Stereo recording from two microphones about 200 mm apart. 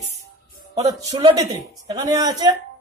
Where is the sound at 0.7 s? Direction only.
20° right (ahead or behind).